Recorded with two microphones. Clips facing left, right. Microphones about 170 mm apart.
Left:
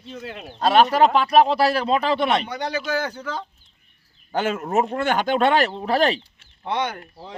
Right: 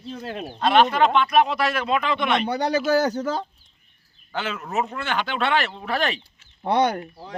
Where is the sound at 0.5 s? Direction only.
40° left (ahead or behind).